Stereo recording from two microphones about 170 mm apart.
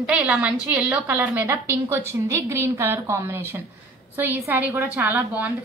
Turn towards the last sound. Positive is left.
turn(degrees=-10)  # may be behind; listen again after turning